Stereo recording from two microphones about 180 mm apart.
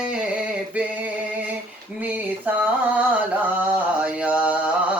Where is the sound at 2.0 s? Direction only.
10° right (ahead or behind).